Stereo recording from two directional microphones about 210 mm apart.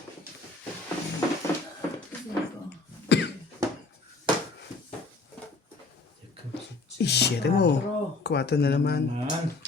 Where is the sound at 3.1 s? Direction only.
55° left (ahead or behind).